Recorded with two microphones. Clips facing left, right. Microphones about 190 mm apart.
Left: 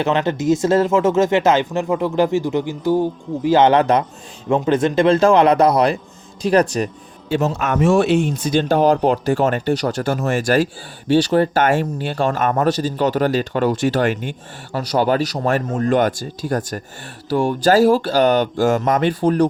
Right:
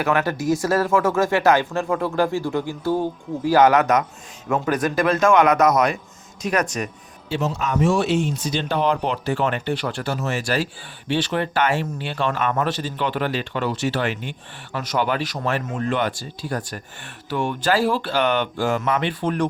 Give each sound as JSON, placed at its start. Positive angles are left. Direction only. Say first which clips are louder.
{"t": 0.0, "sound": "speech", "louder": "left 3 dB", "side_deg": 25}
{"t": 7.3, "sound": "speech", "louder": "left 5 dB", "side_deg": 50}
{"t": 11.1, "sound": "speech", "louder": "left 8 dB", "side_deg": 40}